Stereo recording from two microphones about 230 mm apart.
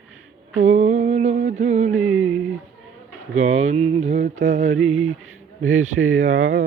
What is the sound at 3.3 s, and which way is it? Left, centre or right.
Mantra, right.